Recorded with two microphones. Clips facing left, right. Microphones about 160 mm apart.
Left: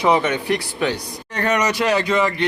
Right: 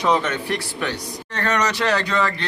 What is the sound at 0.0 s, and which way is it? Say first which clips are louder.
A man's voice: left 3 dB; 10° left (ahead or behind).